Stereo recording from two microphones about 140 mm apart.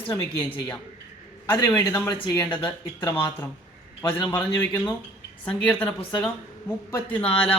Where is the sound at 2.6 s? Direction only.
35° left (ahead or behind).